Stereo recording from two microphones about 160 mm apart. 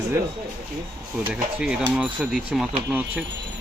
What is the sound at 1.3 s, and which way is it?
Speech, 5° right (ahead or behind).